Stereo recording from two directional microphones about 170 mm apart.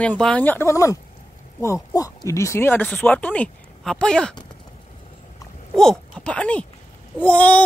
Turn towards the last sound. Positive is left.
turn(degrees=10)  # may be behind; listen again after turning